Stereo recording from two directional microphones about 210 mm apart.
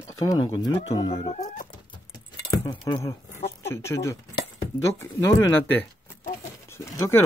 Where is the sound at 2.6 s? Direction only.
20° left (ahead or behind).